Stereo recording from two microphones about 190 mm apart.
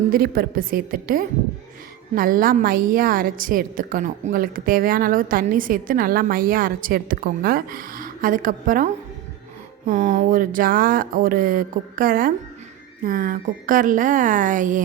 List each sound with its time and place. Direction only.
0.1 s a woman's voice: 50° right (ahead or behind)